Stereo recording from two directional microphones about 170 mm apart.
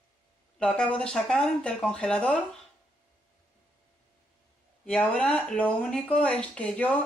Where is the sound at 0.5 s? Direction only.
5° left (ahead or behind).